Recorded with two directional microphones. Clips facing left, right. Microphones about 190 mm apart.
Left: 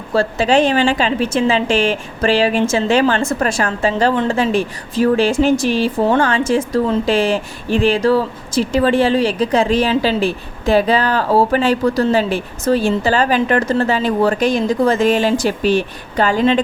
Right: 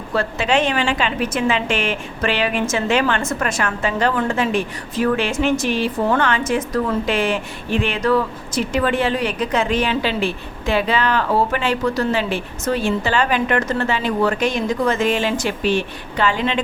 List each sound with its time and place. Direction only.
0.1 s a woman's voice: 35° left (ahead or behind)